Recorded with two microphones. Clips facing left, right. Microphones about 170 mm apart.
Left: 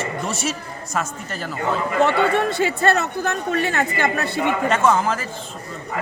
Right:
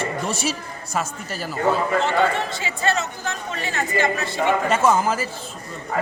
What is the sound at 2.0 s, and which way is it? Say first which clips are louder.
Speech: left 3 dB; 60° left (ahead or behind).